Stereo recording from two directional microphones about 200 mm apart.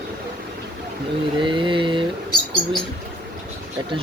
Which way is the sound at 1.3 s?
25° right (ahead or behind).